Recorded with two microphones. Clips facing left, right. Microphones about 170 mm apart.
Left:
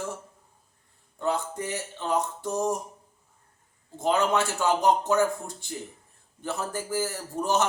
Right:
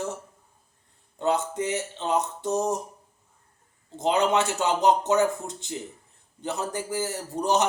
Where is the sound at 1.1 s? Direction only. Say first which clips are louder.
Right 3 dB; 20° right (ahead or behind).